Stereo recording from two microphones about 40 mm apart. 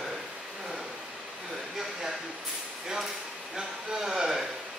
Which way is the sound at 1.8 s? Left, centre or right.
Centre.